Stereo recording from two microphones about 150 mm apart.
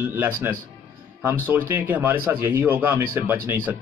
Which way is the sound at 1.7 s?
10° right (ahead or behind).